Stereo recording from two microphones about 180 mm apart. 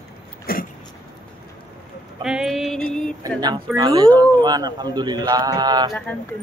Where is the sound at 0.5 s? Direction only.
55° left (ahead or behind).